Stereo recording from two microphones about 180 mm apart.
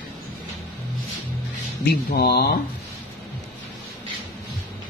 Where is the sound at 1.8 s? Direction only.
60° left (ahead or behind).